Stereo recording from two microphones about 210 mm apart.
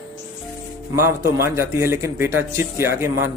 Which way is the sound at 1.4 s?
10° right (ahead or behind).